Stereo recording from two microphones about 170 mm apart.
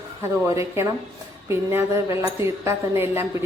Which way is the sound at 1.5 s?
15° right (ahead or behind).